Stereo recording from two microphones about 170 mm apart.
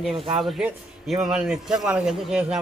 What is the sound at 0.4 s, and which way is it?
A man's voice, centre (ahead or behind).